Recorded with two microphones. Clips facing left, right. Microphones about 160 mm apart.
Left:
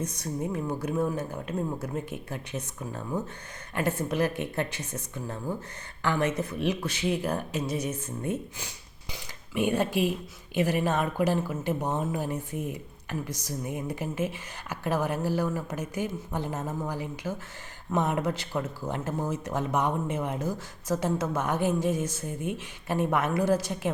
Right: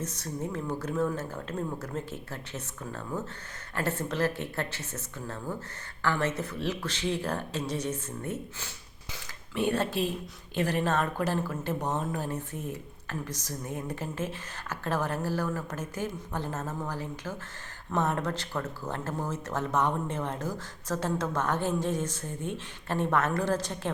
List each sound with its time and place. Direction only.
0.0 s speech: 15° left (ahead or behind)